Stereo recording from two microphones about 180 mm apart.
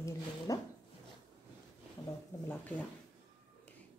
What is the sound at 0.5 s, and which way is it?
Dog, 20° left (ahead or behind).